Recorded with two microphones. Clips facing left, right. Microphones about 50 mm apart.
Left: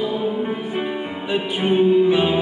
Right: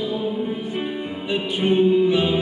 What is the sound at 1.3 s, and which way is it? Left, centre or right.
Music, left.